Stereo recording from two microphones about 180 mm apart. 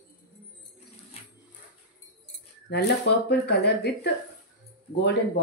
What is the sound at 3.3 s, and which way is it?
Speech, 65° left (ahead or behind).